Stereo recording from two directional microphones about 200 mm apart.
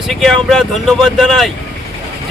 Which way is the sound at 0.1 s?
Centre (ahead or behind).